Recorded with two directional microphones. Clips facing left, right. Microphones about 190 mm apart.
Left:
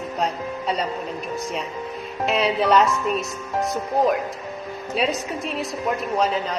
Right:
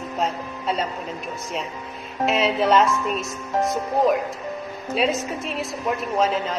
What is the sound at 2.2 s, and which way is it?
Speech, centre (ahead or behind).